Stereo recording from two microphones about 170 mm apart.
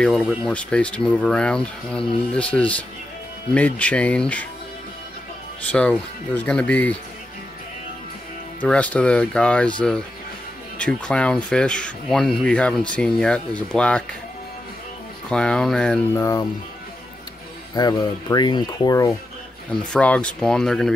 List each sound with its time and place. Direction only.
0.0 s speech: 5° left (ahead or behind)
5.7 s speech: 10° left (ahead or behind)
8.5 s speech: 10° left (ahead or behind)
15.2 s speech: 5° left (ahead or behind)
16.2 s speech: 20° left (ahead or behind)
17.7 s speech: 25° left (ahead or behind)
19.9 s speech: 5° left (ahead or behind)